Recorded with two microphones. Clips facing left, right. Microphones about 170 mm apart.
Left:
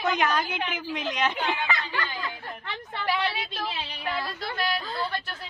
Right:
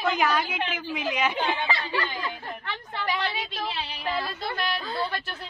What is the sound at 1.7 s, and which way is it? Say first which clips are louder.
Speech: right 2 dB; 30° right (ahead or behind).